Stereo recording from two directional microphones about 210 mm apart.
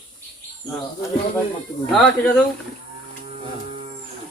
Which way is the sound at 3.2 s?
30° right (ahead or behind).